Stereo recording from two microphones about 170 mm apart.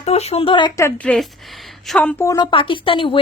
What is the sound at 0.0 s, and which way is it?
Speech, 40° left (ahead or behind).